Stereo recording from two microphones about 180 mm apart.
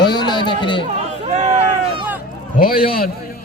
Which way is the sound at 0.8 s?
40° right (ahead or behind).